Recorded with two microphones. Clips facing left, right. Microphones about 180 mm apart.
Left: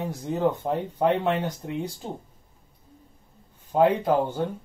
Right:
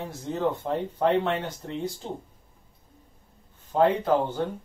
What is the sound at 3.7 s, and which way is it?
Speech, 10° left (ahead or behind).